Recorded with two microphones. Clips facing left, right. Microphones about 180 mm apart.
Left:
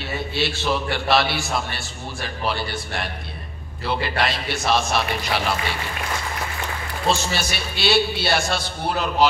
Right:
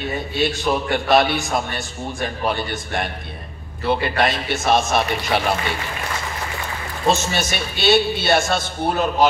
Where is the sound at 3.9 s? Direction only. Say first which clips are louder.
Right 4 dB; 55° right (ahead or behind).